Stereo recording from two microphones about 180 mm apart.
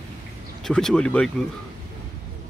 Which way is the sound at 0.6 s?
5° left (ahead or behind).